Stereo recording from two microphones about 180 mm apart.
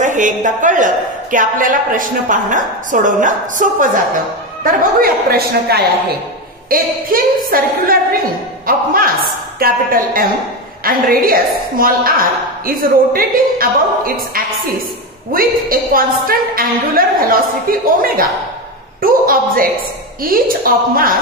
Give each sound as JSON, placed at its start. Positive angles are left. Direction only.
{"t": 0.0, "sound": "a woman's voice", "side_deg": -45}
{"t": 4.6, "sound": "a woman's voice", "side_deg": -55}